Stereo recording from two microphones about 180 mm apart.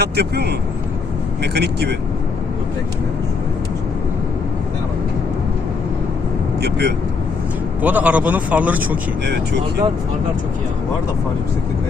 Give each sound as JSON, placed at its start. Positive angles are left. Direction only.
{"t": 0.0, "sound": "speech", "side_deg": -65}
{"t": 6.6, "sound": "speech", "side_deg": -65}
{"t": 7.8, "sound": "speech", "side_deg": -10}
{"t": 9.2, "sound": "speech", "side_deg": -70}